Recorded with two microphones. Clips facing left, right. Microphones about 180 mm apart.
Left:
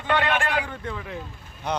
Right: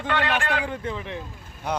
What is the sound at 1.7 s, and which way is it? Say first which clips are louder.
Speech: even; 5° right (ahead or behind).